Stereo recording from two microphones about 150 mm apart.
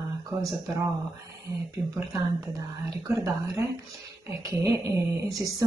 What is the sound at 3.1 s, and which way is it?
Speech, 20° right (ahead or behind).